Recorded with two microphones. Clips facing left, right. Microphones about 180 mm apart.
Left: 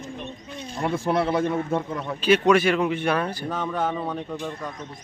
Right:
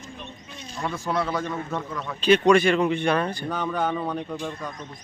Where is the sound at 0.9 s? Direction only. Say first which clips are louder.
Left 4 dB; 30° left (ahead or behind).